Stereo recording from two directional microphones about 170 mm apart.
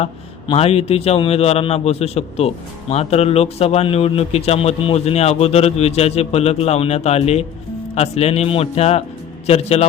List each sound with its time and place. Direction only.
0.0 s a man's voice: 35° left (ahead or behind)